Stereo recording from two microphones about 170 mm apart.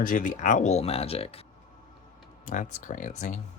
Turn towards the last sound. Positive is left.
turn(degrees=45)  # may be behind; listen again after turning